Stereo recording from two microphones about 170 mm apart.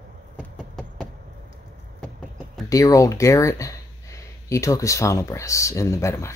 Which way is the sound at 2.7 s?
20° left (ahead or behind).